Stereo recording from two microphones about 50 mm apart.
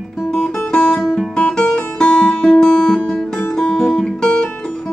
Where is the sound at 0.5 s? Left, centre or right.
Centre.